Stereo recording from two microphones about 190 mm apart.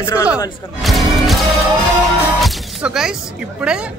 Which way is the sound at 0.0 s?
15° left (ahead or behind).